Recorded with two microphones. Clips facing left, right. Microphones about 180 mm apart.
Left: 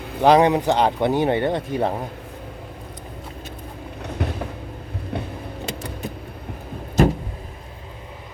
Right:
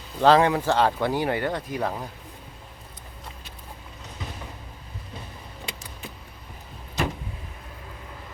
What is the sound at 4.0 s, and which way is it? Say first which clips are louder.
Vehicle: left 12 dB; 65° left (ahead or behind).